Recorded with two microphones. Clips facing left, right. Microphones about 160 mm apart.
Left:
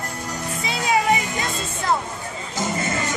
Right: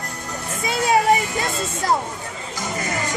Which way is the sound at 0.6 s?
45° right (ahead or behind).